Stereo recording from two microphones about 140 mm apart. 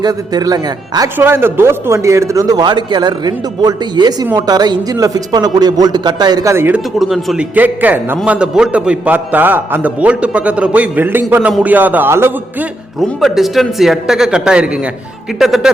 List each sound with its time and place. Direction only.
0.0 s a man's voice: 30° right (ahead or behind)
1.2 s a man's voice: 15° right (ahead or behind)
7.0 s a man's voice: centre (ahead or behind)
7.5 s a man's voice: 10° right (ahead or behind)
13.0 s a man's voice: centre (ahead or behind)